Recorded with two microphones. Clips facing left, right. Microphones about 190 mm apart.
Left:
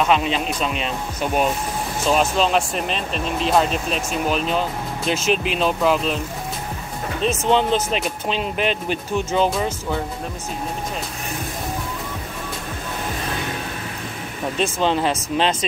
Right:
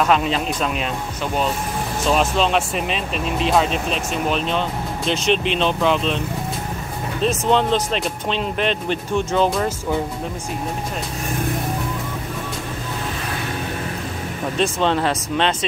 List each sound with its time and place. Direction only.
0.0 s speech: centre (ahead or behind)
1.2 s speech: 15° left (ahead or behind)
2.0 s speech: centre (ahead or behind)
14.6 s speech: 5° left (ahead or behind)